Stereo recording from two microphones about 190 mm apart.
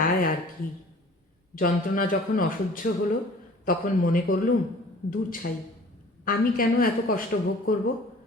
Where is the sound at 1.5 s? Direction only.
45° left (ahead or behind).